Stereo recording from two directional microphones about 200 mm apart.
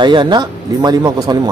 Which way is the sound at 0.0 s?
25° right (ahead or behind).